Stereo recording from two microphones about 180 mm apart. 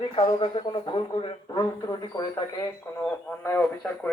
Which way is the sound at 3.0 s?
10° left (ahead or behind).